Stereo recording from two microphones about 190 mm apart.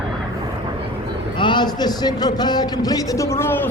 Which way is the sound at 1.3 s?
25° left (ahead or behind).